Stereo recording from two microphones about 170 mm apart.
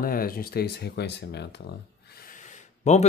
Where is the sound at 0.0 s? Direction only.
60° left (ahead or behind); by 1.6 s 80° left.